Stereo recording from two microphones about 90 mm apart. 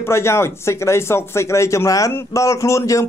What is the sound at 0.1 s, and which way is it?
Speech, 30° left (ahead or behind).